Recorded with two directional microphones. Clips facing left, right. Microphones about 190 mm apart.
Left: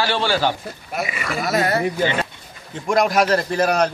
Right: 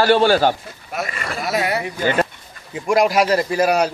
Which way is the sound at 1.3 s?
5° right (ahead or behind).